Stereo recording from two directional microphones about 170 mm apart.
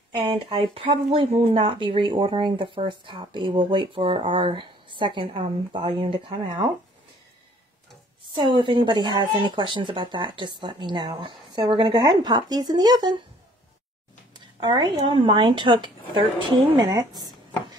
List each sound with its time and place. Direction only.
0.1 s speech: 25° right (ahead or behind)
8.4 s speech: 30° right (ahead or behind)
14.3 s a sound: 25° right (ahead or behind)
15.0 s speech: 30° right (ahead or behind)